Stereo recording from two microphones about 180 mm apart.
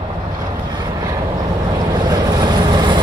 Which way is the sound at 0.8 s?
20° right (ahead or behind).